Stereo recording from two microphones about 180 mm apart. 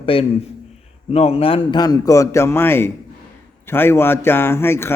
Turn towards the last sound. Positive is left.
turn(degrees=15)  # may be behind; listen again after turning